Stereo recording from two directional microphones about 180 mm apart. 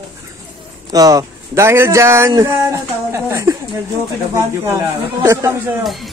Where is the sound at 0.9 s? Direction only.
20° right (ahead or behind).